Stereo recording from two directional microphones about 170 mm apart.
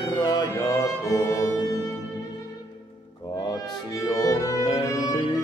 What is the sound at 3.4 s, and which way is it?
Violin, 25° left (ahead or behind).